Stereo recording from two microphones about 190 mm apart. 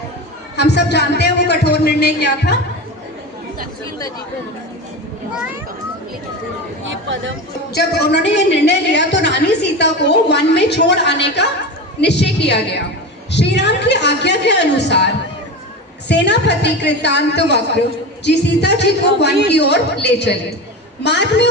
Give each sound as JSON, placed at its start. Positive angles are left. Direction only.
{"t": 0.5, "sound": "a woman's voice", "side_deg": 60}
{"t": 6.8, "sound": "speech", "side_deg": -75}
{"t": 7.7, "sound": "a woman's voice", "side_deg": 60}